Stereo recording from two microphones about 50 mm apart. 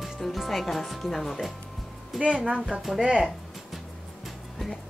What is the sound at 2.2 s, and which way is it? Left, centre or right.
A woman's voice, right.